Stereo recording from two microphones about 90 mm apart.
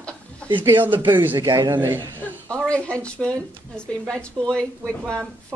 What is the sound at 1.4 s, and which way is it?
Speech, 50° right (ahead or behind).